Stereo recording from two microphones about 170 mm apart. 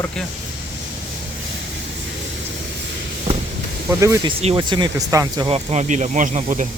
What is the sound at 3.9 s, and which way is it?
Speech, 15° right (ahead or behind).